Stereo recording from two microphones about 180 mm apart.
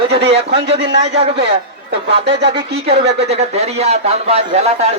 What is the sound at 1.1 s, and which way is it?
A man's voice, 35° right (ahead or behind).